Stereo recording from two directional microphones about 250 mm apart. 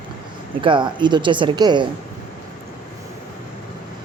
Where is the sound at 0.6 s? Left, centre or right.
Centre.